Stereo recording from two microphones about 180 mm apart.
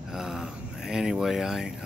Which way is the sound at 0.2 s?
5° right (ahead or behind).